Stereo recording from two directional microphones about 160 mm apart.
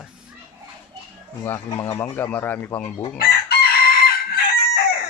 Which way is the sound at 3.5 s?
75° left (ahead or behind).